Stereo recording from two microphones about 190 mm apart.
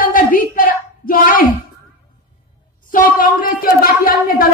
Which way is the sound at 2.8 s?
50° left (ahead or behind).